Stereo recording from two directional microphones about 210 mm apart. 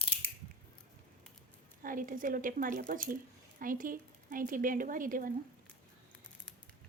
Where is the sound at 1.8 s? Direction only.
40° right (ahead or behind).